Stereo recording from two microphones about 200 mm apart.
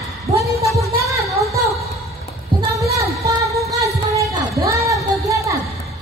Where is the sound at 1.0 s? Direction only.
15° right (ahead or behind).